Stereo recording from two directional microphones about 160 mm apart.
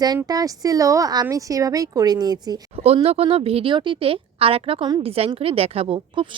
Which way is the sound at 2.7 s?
40° right (ahead or behind).